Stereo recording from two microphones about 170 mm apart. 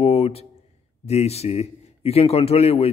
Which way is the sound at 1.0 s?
40° left (ahead or behind).